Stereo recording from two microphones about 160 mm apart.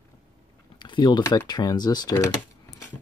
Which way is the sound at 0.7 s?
30° left (ahead or behind).